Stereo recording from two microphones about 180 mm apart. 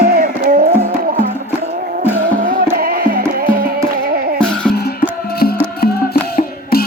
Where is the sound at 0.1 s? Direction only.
55° right (ahead or behind).